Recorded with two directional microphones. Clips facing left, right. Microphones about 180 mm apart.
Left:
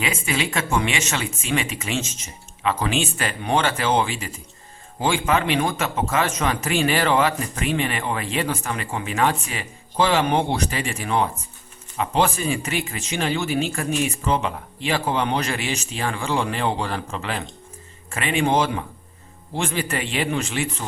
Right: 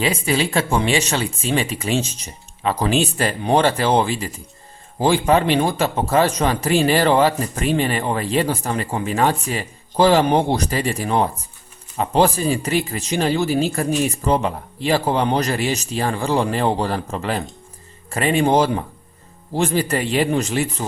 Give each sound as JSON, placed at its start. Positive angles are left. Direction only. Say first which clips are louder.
{"t": 0.0, "sound": "a man's voice", "louder": "right 5 dB", "side_deg": -35}